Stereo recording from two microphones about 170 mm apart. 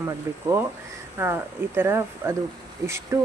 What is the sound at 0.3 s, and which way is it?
Speech, 15° right (ahead or behind).